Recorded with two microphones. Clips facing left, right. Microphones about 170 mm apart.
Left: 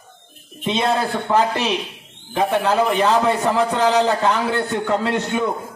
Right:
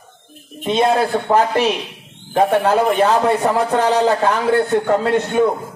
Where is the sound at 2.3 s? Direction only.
45° right (ahead or behind).